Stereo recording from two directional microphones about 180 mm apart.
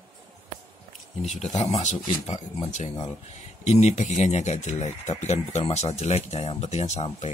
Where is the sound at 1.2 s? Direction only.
40° left (ahead or behind).